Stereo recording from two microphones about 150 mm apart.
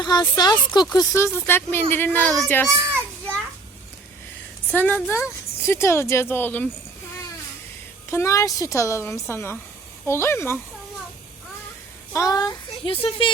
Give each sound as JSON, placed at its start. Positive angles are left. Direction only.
{"t": 0.0, "sound": "speech", "side_deg": 25}
{"t": 2.6, "sound": "a child's voice", "side_deg": -15}
{"t": 4.7, "sound": "speech", "side_deg": 10}
{"t": 8.1, "sound": "speech", "side_deg": 20}
{"t": 12.1, "sound": "speech", "side_deg": 25}